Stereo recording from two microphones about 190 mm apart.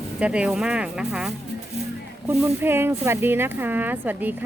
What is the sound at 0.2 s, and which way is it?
Speech, 5° right (ahead or behind).